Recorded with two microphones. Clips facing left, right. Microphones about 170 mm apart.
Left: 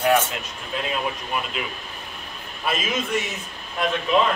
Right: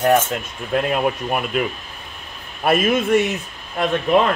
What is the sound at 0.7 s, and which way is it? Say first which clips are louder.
Mantra: right 8 dB; 55° right (ahead or behind).